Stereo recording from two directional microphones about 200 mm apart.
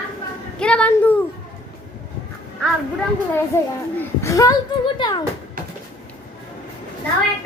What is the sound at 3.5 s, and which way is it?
A child's voice, 15° left (ahead or behind).